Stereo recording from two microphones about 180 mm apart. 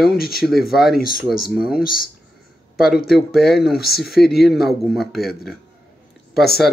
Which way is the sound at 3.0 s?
Centre (ahead or behind).